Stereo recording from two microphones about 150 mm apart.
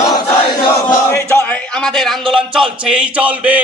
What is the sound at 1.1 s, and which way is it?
Speech, 15° left (ahead or behind).